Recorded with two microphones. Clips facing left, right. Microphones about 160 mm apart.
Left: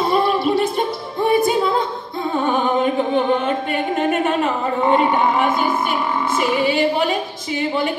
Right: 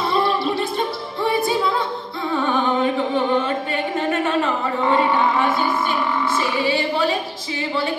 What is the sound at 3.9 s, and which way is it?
A woman's voice, 20° left (ahead or behind).